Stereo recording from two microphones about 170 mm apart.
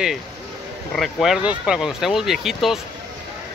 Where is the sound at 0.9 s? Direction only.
Centre (ahead or behind).